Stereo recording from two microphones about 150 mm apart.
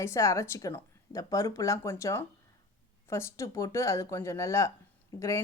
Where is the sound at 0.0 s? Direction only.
20° left (ahead or behind).